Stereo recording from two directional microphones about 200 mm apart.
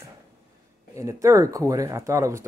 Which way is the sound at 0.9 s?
15° right (ahead or behind).